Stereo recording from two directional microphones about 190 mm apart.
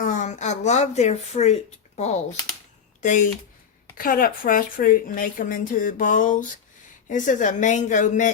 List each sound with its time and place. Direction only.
0.0 s a woman's voice: 40° left (ahead or behind)